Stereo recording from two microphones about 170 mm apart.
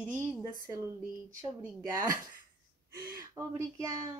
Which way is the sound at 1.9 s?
20° right (ahead or behind).